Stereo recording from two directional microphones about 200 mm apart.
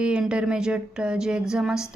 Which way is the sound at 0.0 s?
5° right (ahead or behind).